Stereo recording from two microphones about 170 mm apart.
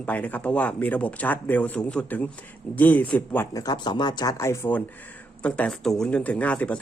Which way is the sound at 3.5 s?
25° left (ahead or behind).